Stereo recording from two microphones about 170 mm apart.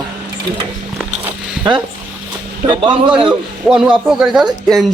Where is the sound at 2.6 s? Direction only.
30° right (ahead or behind).